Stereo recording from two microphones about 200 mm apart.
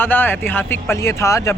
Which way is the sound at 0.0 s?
10° left (ahead or behind).